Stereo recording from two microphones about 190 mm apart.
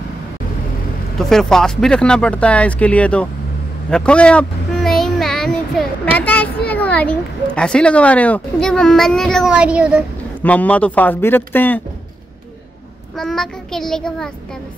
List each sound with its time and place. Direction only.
1.1 s a woman's voice: centre (ahead or behind)
3.9 s a sound: 5° left (ahead or behind)
6.1 s a child's voice: 10° left (ahead or behind)
10.4 s speech: 5° left (ahead or behind)
13.1 s a woman's voice: centre (ahead or behind)